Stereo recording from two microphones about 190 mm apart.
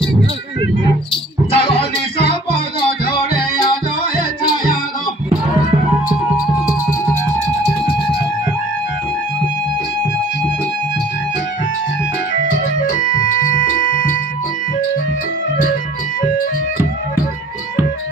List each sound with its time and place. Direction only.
1.1 s music: 30° left (ahead or behind)
1.8 s music: 60° left (ahead or behind)
13.8 s music: 45° left (ahead or behind)